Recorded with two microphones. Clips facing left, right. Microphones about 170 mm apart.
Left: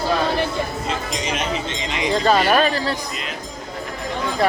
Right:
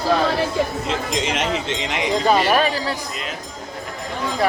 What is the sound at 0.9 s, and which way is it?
Speech, 90° right.